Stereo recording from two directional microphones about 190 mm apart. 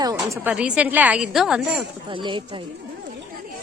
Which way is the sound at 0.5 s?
5° right (ahead or behind).